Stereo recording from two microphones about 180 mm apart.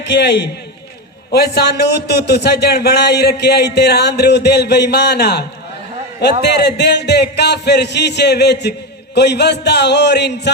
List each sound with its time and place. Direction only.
0.1 s a man's voice: 75° left (ahead or behind)
1.3 s a man's voice: 60° left (ahead or behind)